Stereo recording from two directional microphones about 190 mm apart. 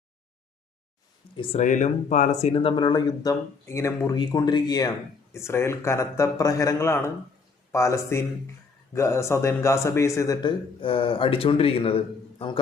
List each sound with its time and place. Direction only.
1.4 s a man's voice: 40° left (ahead or behind)